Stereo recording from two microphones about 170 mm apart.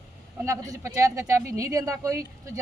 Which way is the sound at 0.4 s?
20° right (ahead or behind).